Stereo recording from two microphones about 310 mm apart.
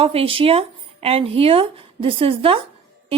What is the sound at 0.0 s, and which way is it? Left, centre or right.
A woman's voice, centre.